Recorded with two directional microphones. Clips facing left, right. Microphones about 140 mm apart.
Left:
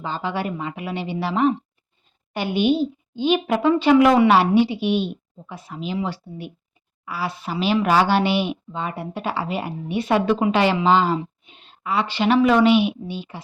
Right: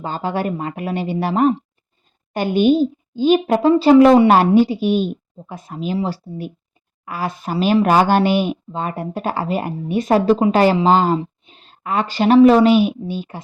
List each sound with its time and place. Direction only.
0.0 s speech: 45° right (ahead or behind)
4.3 s speech: 45° right (ahead or behind)